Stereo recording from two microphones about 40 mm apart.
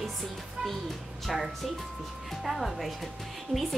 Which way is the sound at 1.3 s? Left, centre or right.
Centre.